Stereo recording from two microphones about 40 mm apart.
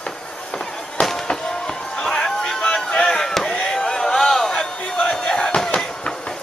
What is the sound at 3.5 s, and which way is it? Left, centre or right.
Chop, left.